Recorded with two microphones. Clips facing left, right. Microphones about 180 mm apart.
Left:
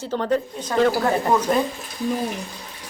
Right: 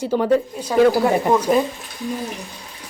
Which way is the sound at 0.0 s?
10° right (ahead or behind).